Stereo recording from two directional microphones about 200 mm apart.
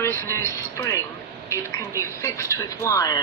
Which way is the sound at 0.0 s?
10° left (ahead or behind).